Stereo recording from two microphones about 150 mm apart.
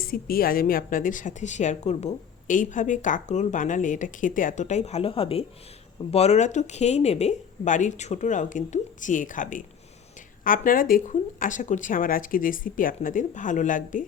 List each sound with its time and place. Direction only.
0.0 s a woman's voice: 75° left (ahead or behind); by 14.0 s 60° left (ahead or behind)